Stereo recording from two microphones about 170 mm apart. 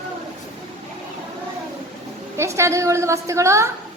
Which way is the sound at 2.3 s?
15° right (ahead or behind).